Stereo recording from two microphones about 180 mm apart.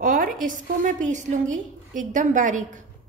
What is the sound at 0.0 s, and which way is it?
A woman's voice, 50° right (ahead or behind).